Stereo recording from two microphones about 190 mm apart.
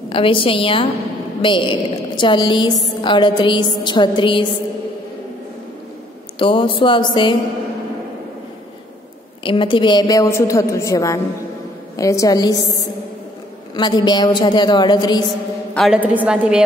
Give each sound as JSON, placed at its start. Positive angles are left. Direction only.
{"t": 0.1, "sound": "a woman's voice", "side_deg": 30}
{"t": 6.3, "sound": "a woman's voice", "side_deg": 25}
{"t": 9.4, "sound": "a woman's voice", "side_deg": 25}
{"t": 13.7, "sound": "a woman's voice", "side_deg": 25}
{"t": 15.7, "sound": "a woman's voice", "side_deg": 0}